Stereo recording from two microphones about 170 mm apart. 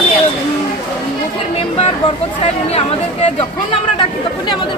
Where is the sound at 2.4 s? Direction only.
35° left (ahead or behind).